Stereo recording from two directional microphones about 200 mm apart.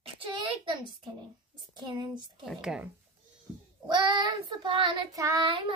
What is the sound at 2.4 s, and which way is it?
Speech, centre (ahead or behind).